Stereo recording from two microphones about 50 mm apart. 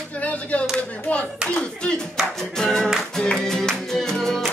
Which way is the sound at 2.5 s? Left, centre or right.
Centre.